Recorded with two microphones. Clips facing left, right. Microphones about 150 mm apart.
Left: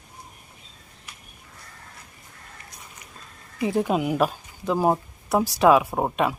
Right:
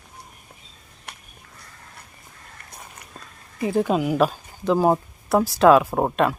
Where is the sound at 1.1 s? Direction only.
65° right (ahead or behind).